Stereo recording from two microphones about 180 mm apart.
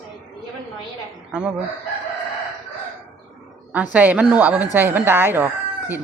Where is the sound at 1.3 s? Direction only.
5° right (ahead or behind).